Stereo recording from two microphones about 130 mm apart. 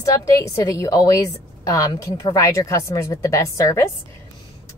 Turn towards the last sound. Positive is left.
turn(degrees=25)  # may be behind; listen again after turning